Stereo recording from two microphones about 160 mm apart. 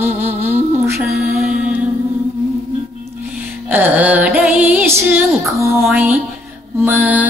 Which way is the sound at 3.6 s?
10° right (ahead or behind).